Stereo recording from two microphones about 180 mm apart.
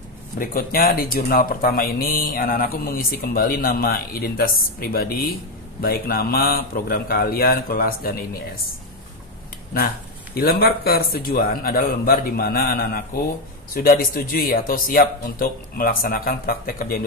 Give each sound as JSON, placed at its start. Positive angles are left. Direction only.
{"t": 0.4, "sound": "a man's voice", "side_deg": 55}
{"t": 10.3, "sound": "a man's voice", "side_deg": 55}